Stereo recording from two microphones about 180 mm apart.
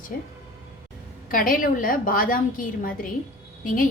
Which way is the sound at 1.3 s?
50° left (ahead or behind).